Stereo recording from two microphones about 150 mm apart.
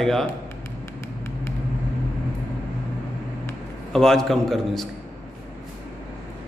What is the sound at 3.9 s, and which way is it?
Speech, 5° left (ahead or behind).